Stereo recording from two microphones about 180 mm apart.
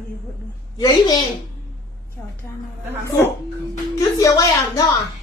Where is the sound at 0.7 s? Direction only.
25° left (ahead or behind).